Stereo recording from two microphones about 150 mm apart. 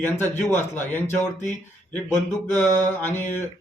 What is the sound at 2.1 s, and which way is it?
A man's voice, 15° left (ahead or behind).